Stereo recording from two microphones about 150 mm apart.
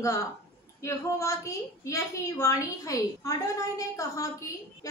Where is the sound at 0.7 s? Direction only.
20° left (ahead or behind).